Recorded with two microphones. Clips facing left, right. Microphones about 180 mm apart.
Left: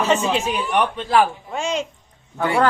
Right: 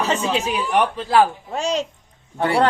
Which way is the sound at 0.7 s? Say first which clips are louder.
Right 1 dB; 35° right (ahead or behind).